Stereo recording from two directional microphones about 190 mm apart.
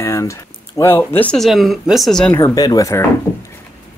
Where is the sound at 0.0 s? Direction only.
15° left (ahead or behind).